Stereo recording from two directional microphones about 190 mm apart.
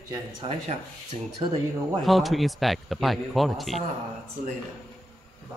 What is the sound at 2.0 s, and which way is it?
A man's voice, centre (ahead or behind).